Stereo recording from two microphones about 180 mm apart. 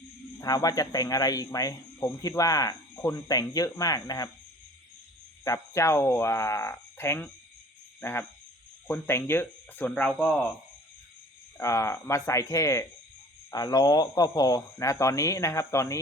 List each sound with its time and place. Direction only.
0.3 s speech: 20° left (ahead or behind)
5.5 s speech: 15° left (ahead or behind)
8.9 s speech: 15° left (ahead or behind)
11.5 s speech: 15° left (ahead or behind)